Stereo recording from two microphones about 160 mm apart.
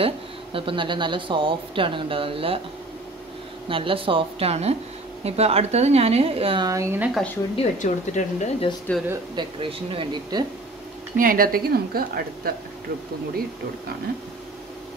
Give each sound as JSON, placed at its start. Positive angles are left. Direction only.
{"t": 0.0, "sound": "speech", "side_deg": -35}
{"t": 3.6, "sound": "speech", "side_deg": -35}
{"t": 6.7, "sound": "speech", "side_deg": -15}
{"t": 7.5, "sound": "speech", "side_deg": 50}
{"t": 8.9, "sound": "speech", "side_deg": 10}
{"t": 9.3, "sound": "speech", "side_deg": -30}
{"t": 11.1, "sound": "a woman's voice", "side_deg": -60}